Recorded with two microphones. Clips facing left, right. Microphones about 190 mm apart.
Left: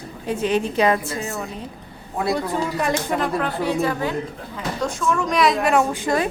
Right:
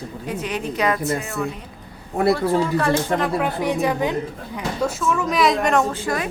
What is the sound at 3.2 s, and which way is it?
Speech, 10° right (ahead or behind).